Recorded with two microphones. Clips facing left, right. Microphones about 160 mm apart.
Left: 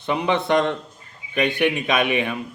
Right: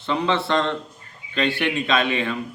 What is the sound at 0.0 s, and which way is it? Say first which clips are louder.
A man's voice: left 1 dB; 15° left (ahead or behind).